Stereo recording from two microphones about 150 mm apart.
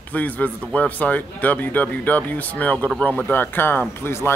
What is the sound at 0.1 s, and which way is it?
Speech, 10° left (ahead or behind).